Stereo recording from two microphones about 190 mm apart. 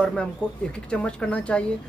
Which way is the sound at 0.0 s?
5° left (ahead or behind).